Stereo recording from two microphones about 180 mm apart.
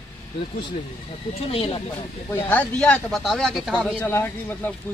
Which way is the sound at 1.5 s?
30° left (ahead or behind).